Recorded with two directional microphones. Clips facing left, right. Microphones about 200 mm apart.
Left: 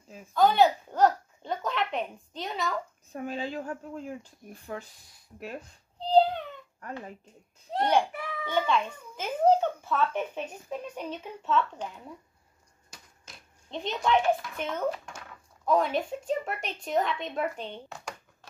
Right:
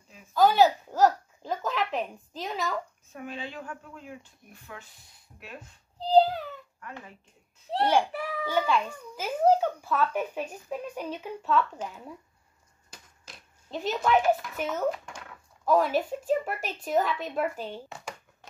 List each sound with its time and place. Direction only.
0.3 s speech: 5° right (ahead or behind)
3.1 s speech: 40° left (ahead or behind)
5.9 s speech: centre (ahead or behind)
8.5 s a child's voice: 5° right (ahead or behind)
12.9 s a sound: 5° right (ahead or behind)
15.6 s speech: 5° right (ahead or behind)